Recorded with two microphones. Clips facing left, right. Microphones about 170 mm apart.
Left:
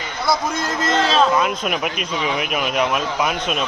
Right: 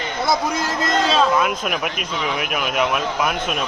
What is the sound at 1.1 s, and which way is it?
Speech, centre (ahead or behind).